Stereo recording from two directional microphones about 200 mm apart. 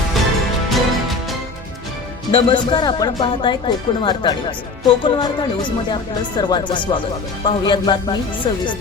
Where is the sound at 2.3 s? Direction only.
25° left (ahead or behind).